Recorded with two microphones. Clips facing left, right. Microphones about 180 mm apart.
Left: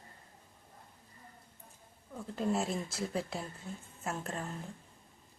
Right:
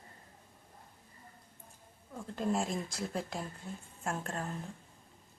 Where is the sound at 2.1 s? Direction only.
Centre (ahead or behind).